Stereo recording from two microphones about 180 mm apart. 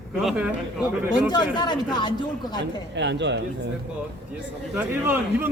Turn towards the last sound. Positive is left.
turn(degrees=-10)  # may be behind; listen again after turning